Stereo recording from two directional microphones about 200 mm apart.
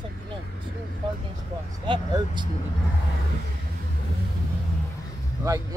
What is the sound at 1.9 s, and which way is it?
Speech, 20° right (ahead or behind).